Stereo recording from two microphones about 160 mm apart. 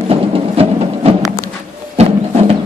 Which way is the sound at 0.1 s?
40° right (ahead or behind).